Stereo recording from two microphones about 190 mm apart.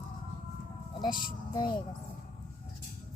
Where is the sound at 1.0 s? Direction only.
25° left (ahead or behind).